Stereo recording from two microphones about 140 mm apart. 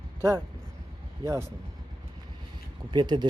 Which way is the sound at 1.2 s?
20° right (ahead or behind).